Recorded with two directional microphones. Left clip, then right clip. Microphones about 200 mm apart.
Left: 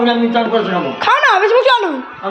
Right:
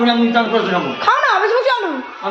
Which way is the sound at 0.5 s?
25° left (ahead or behind).